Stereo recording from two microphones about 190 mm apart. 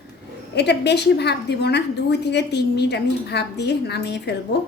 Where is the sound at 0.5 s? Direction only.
60° left (ahead or behind).